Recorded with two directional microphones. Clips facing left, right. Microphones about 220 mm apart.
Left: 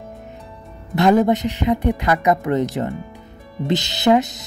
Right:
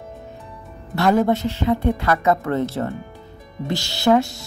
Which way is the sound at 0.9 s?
20° left (ahead or behind).